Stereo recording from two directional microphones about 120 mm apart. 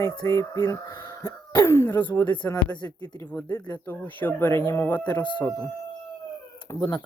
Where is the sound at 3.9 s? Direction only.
15° left (ahead or behind).